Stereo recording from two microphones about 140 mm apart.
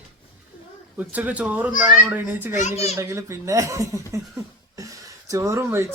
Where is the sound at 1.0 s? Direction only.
10° right (ahead or behind).